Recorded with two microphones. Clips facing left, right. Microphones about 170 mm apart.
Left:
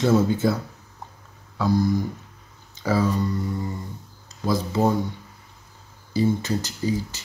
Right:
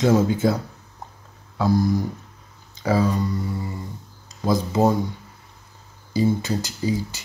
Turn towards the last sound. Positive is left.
turn(degrees=-10)  # may be behind; listen again after turning